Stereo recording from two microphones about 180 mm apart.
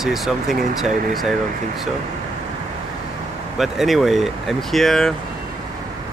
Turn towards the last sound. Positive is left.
turn(degrees=0)  # may be behind; listen again after turning